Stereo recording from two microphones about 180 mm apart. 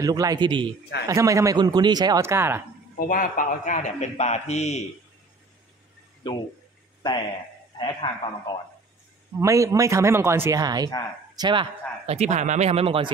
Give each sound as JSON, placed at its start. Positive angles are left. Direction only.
{"t": 0.0, "sound": "a man's voice", "side_deg": -20}
{"t": 3.0, "sound": "a man's voice", "side_deg": 50}
{"t": 6.2, "sound": "speech", "side_deg": 25}
{"t": 9.4, "sound": "speech", "side_deg": -15}
{"t": 12.1, "sound": "speech", "side_deg": -40}